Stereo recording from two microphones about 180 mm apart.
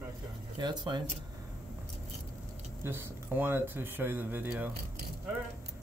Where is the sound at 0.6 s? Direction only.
25° right (ahead or behind).